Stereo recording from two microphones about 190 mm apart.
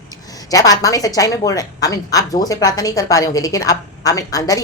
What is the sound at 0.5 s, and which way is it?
A woman's voice, 20° left (ahead or behind).